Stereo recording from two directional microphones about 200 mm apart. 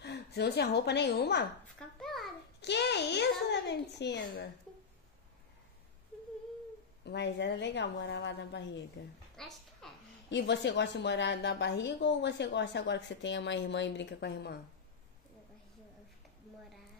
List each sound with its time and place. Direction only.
0.0 s a woman's voice: 55° left (ahead or behind)
2.0 s a sound: centre (ahead or behind)
2.6 s a woman's voice: 60° left (ahead or behind)
7.1 s a woman's voice: 60° left (ahead or behind)
9.4 s a woman's voice: centre (ahead or behind)
10.3 s a woman's voice: 60° left (ahead or behind)